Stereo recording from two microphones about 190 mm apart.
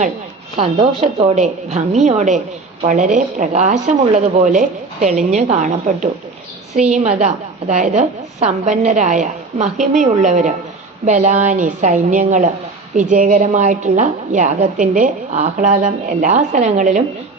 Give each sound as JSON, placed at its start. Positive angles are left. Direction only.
{"t": 0.5, "sound": "a woman's voice", "side_deg": -35}